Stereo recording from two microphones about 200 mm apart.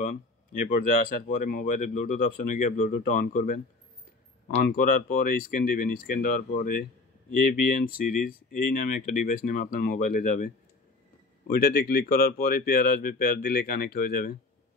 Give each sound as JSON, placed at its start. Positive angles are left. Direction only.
{"t": 0.0, "sound": "speech", "side_deg": 40}
{"t": 4.6, "sound": "speech", "side_deg": 50}